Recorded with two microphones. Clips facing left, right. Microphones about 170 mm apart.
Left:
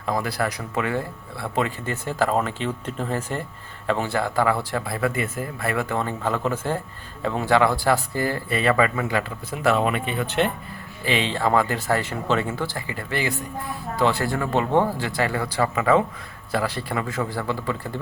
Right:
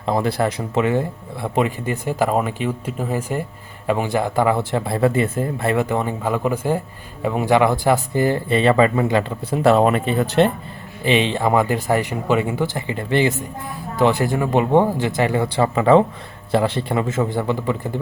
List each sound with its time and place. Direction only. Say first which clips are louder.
0.0 s speech: right 5 dB; 25° right (ahead or behind)
11.0 s speech: right 5 dB; 20° right (ahead or behind)